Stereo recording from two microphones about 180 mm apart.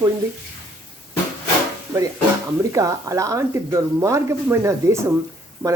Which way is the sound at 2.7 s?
15° right (ahead or behind).